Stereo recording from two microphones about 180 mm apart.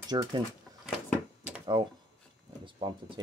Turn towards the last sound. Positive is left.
turn(degrees=-25)  # may be behind; listen again after turning